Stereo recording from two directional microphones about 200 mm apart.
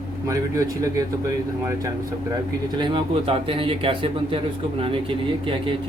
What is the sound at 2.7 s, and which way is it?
A man's voice, 25° right (ahead or behind).